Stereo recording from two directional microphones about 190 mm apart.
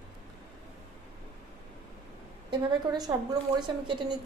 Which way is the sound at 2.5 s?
20° right (ahead or behind).